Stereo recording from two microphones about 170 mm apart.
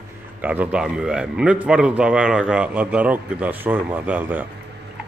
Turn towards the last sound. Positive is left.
turn(degrees=-10)  # may be behind; listen again after turning